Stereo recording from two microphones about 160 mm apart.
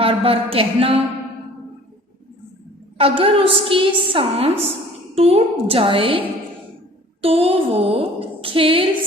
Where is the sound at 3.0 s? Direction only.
35° right (ahead or behind).